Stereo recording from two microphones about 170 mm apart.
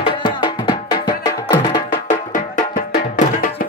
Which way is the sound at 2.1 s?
50° left (ahead or behind).